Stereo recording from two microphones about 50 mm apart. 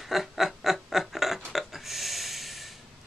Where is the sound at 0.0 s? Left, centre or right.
Centre.